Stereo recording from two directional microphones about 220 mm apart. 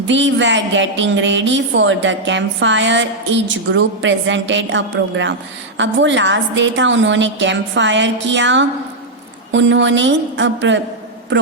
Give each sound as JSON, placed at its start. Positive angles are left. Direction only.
{"t": 0.1, "sound": "a woman's voice", "side_deg": -55}